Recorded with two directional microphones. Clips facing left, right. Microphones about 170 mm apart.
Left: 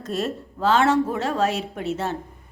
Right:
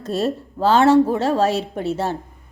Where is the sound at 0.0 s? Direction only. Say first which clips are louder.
Right 5 dB; 30° right (ahead or behind).